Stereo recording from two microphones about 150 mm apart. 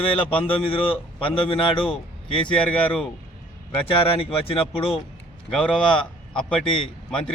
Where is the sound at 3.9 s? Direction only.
40° left (ahead or behind).